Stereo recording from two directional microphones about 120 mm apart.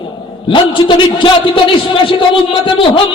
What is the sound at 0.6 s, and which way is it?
Speech, 45° left (ahead or behind).